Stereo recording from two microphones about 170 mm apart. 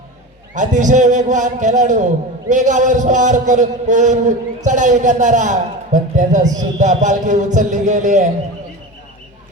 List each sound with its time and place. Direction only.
0.5 s a man's voice: 45° right (ahead or behind)